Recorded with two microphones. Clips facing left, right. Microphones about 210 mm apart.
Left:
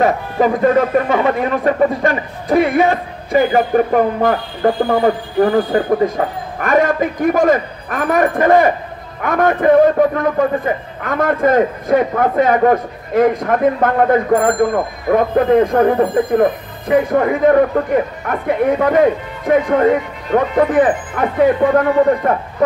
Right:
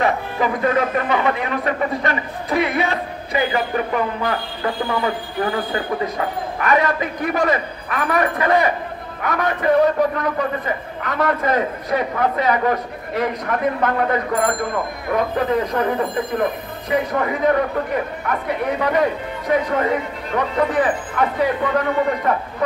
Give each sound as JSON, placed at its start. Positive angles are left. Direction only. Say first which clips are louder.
{"t": 0.0, "sound": "speech", "louder": "left 5 dB", "side_deg": 45}
{"t": 18.8, "sound": "speech", "louder": "left 6 dB", "side_deg": 50}